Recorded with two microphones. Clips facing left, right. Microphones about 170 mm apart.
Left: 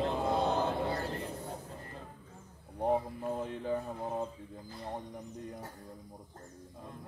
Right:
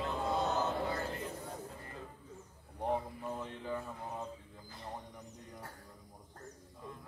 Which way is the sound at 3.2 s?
45° left (ahead or behind).